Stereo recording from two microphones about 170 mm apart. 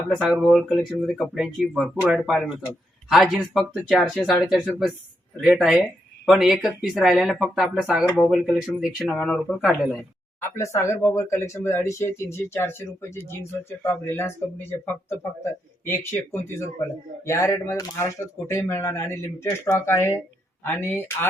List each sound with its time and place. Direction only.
0.1 s speech: 5° right (ahead or behind)
10.4 s speech: 15° left (ahead or behind)